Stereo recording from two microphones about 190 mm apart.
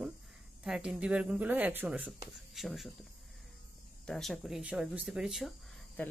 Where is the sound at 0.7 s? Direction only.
5° right (ahead or behind).